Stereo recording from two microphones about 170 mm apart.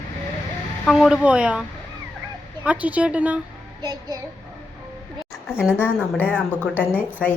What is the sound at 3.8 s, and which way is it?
Child singing, 25° right (ahead or behind).